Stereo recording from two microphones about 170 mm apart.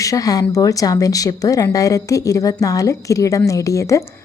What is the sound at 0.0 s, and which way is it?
A woman's voice, 20° left (ahead or behind).